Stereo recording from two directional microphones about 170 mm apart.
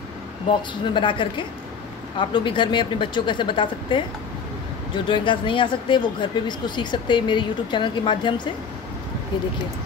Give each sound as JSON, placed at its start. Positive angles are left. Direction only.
{"t": 0.5, "sound": "speech", "side_deg": 30}